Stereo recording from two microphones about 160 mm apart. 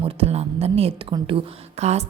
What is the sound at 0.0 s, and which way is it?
A woman's voice, 40° right (ahead or behind).